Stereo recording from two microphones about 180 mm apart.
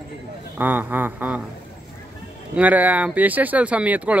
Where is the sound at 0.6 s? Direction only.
10° right (ahead or behind).